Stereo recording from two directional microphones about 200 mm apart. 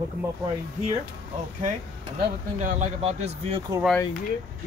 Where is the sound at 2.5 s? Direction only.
35° right (ahead or behind).